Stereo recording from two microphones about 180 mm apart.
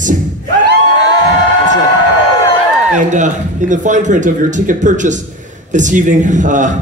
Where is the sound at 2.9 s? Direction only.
40° right (ahead or behind).